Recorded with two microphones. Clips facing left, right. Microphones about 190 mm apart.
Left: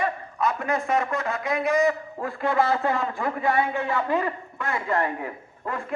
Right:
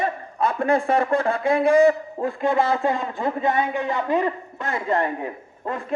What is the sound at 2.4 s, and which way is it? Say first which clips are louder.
Speech: right 1 dB; 20° right (ahead or behind).